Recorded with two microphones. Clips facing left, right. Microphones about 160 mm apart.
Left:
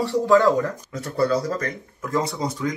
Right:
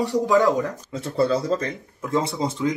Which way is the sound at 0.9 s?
25° right (ahead or behind).